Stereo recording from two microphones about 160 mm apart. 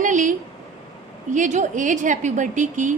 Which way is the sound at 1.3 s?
50° right (ahead or behind).